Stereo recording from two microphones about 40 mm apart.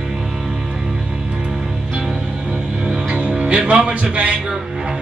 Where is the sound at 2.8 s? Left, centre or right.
Right.